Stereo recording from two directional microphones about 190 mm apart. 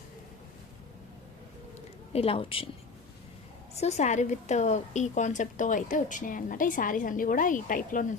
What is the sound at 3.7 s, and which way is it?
A woman's voice, 35° left (ahead or behind).